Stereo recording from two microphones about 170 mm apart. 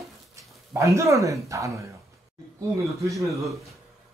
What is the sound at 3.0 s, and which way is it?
Speech, 20° right (ahead or behind).